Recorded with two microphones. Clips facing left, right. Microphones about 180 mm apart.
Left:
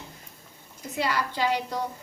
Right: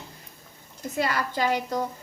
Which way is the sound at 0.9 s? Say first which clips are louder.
Right 1 dB; 50° right (ahead or behind).